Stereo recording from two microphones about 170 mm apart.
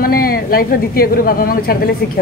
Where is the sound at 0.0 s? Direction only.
60° left (ahead or behind).